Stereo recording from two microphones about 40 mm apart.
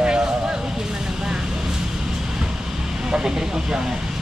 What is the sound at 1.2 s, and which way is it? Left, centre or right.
Vehicle, centre.